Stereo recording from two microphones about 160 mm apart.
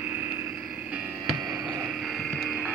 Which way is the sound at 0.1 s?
15° right (ahead or behind).